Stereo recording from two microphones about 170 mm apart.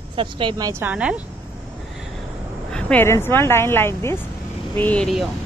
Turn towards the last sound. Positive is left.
turn(degrees=0)  # may be behind; listen again after turning